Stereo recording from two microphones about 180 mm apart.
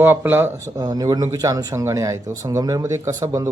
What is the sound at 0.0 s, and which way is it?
Speech, 10° right (ahead or behind).